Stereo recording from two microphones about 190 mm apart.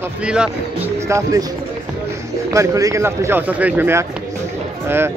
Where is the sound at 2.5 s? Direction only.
15° right (ahead or behind).